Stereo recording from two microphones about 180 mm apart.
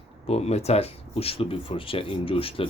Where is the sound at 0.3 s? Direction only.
35° left (ahead or behind).